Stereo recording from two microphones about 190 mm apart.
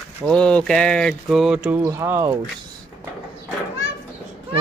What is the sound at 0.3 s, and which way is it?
Speech, 5° left (ahead or behind).